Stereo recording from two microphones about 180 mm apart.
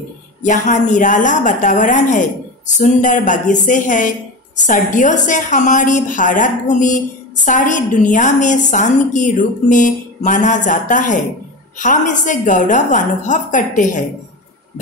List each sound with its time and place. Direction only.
0.4 s a woman's voice: 45° left (ahead or behind)